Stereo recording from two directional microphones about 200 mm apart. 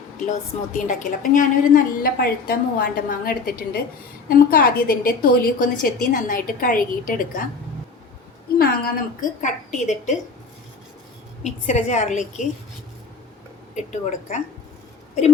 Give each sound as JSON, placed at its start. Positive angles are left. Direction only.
{"t": 0.3, "sound": "a woman's voice", "side_deg": 40}
{"t": 8.5, "sound": "a woman's voice", "side_deg": 50}
{"t": 9.4, "sound": "a woman's voice", "side_deg": 35}
{"t": 11.4, "sound": "a woman's voice", "side_deg": 35}
{"t": 13.7, "sound": "a woman's voice", "side_deg": 35}